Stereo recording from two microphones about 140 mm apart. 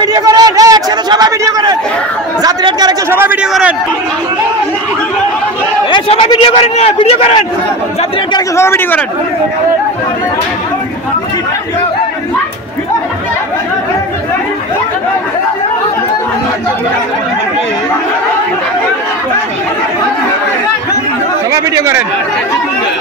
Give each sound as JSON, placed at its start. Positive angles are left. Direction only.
{"t": 0.0, "sound": "a sound", "side_deg": -25}
{"t": 2.4, "sound": "speech", "side_deg": -30}
{"t": 3.1, "sound": "a man's voice", "side_deg": -15}
{"t": 5.9, "sound": "chatter", "side_deg": 35}
{"t": 6.6, "sound": "a man's voice", "side_deg": 45}
{"t": 8.5, "sound": "speech", "side_deg": 15}
{"t": 21.5, "sound": "speech", "side_deg": -25}